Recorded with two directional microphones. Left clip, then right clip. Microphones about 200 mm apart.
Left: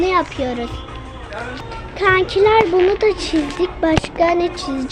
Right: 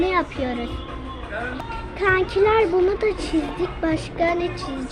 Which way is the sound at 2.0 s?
30° left (ahead or behind).